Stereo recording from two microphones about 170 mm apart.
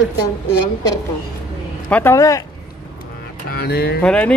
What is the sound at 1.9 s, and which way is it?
Speech, 15° left (ahead or behind).